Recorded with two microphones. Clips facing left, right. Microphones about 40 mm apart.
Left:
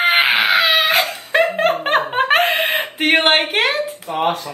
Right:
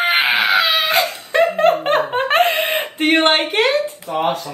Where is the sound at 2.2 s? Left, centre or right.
Left.